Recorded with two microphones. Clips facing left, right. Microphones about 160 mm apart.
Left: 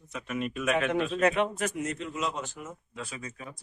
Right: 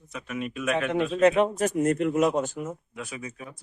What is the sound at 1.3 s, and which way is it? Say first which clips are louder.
Speech: right 6 dB; 40° right (ahead or behind).